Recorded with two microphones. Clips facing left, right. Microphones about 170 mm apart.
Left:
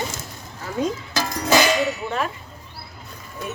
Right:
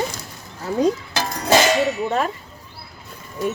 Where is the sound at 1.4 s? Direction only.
30° right (ahead or behind).